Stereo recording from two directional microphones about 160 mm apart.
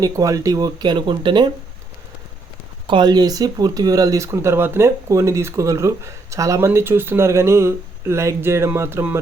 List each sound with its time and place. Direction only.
0.0 s speech: 20° right (ahead or behind)
2.8 s speech: 30° right (ahead or behind)